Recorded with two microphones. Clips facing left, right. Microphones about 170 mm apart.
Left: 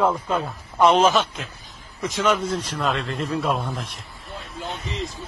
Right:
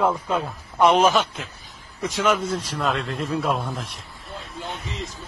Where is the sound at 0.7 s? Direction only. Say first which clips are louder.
Even; 10° right (ahead or behind).